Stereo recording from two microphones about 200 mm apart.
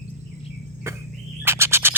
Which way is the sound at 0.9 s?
15° right (ahead or behind).